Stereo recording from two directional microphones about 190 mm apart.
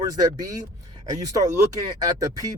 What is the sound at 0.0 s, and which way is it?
Speech, 20° right (ahead or behind).